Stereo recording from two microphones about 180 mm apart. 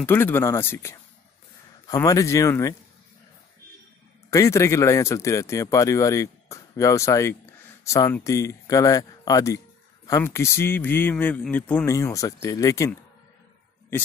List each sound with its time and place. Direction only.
0.0 s speech: 10° left (ahead or behind)
4.3 s speech: 15° left (ahead or behind)